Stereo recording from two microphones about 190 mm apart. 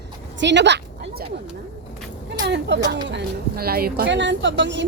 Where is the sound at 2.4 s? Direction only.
65° right (ahead or behind).